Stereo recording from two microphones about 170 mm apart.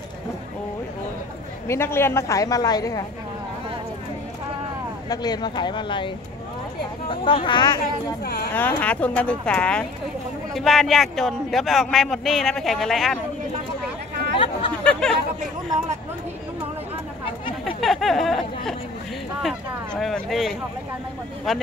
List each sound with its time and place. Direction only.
1.7 s a woman's voice: 15° left (ahead or behind)
5.1 s a woman's voice: 25° left (ahead or behind)
7.8 s speech: 70° left (ahead or behind)
8.5 s speech: 10° left (ahead or behind)
14.3 s speech: 35° left (ahead or behind)
17.6 s speech: centre (ahead or behind)